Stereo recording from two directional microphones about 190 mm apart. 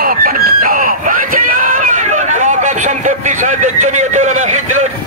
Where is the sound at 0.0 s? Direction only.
45° right (ahead or behind).